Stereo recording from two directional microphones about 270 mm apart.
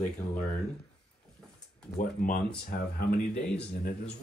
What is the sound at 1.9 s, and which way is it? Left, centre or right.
Speech, left.